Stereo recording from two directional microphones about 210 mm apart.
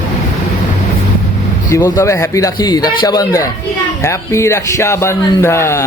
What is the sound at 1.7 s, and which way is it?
A man's voice, 15° left (ahead or behind).